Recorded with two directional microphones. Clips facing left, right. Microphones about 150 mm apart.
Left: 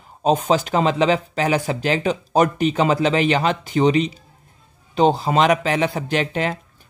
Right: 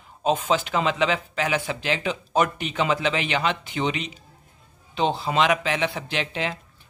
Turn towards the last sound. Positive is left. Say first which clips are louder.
# left 6 dB
turn(degrees=45)  # may be behind; listen again after turning